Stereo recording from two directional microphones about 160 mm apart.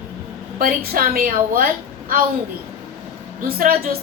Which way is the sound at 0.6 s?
70° right (ahead or behind).